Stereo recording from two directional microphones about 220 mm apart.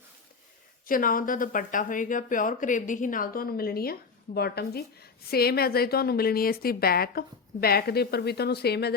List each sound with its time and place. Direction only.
0.9 s a woman's voice: 40° left (ahead or behind)